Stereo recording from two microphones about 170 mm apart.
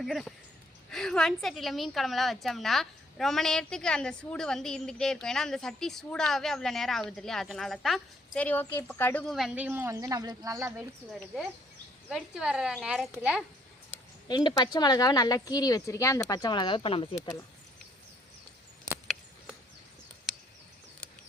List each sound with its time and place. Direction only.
0.0 s a woman's voice: centre (ahead or behind)
9.3 s speech: 5° right (ahead or behind); by 10.7 s 20° right (ahead or behind)
12.0 s a woman's voice: 5° right (ahead or behind)
14.3 s speech: 25° left (ahead or behind)